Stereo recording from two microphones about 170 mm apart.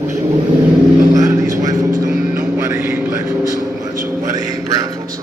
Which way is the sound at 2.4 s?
10° right (ahead or behind).